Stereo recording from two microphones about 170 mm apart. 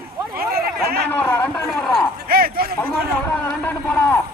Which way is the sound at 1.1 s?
10° left (ahead or behind).